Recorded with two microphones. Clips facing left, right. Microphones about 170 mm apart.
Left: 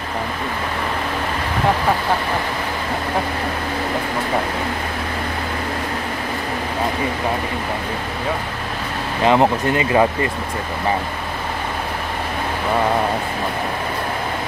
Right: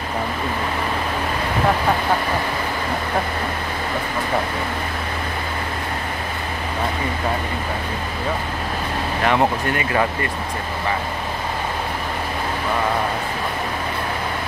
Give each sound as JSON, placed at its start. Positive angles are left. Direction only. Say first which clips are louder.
{"t": 9.2, "sound": "speech", "louder": "left 4 dB", "side_deg": 25}